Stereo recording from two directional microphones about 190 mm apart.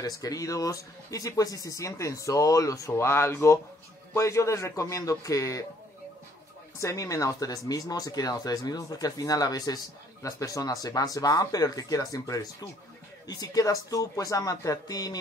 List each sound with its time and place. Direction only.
0.0 s speech: 20° left (ahead or behind)
6.8 s speech: 15° left (ahead or behind)